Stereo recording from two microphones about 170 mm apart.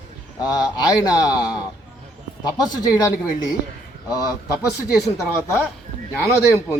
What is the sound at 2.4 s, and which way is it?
Speech, 25° left (ahead or behind).